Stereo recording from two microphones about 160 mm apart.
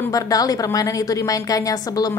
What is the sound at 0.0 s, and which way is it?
A woman's voice, 20° left (ahead or behind).